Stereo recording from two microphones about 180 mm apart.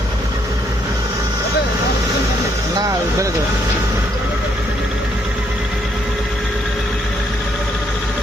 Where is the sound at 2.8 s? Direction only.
20° right (ahead or behind).